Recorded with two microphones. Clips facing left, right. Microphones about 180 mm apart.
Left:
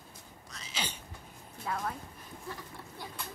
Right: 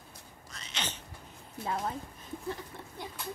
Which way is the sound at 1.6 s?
25° right (ahead or behind).